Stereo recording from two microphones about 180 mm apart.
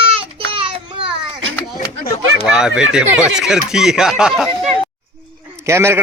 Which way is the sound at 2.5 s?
5° right (ahead or behind).